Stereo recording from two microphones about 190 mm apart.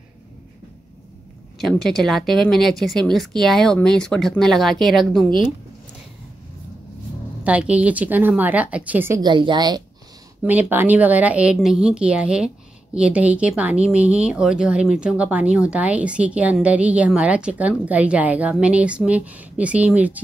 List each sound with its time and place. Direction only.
1.6 s speech: centre (ahead or behind)
7.4 s speech: 5° right (ahead or behind)
9.2 s a woman's voice: 25° right (ahead or behind)
10.4 s speech: 10° right (ahead or behind)